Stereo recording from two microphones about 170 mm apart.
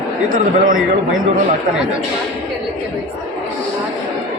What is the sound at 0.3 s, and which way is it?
Speech, 55° right (ahead or behind).